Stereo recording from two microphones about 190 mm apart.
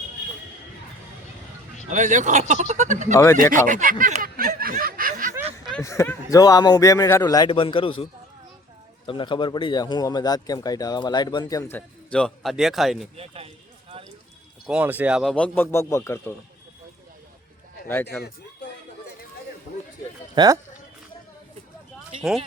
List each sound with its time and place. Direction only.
1.9 s speech: 40° right (ahead or behind)
3.5 s snicker: 40° right (ahead or behind)
5.8 s speech: 15° left (ahead or behind)
9.0 s speech: 25° left (ahead or behind)
12.1 s speech: centre (ahead or behind)
13.1 s speech: 30° right (ahead or behind)
14.7 s speech: 10° right (ahead or behind); by 16.2 s 15° left (ahead or behind)
17.8 s speech: 10° left (ahead or behind)
20.3 s speech: 20° right (ahead or behind)